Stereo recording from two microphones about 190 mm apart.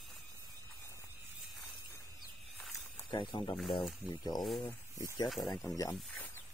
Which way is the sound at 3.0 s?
25° left (ahead or behind).